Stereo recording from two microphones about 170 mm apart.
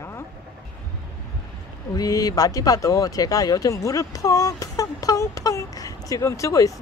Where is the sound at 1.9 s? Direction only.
20° left (ahead or behind).